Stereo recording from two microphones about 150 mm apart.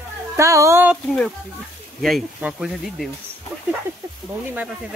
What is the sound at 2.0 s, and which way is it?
Speech, centre (ahead or behind).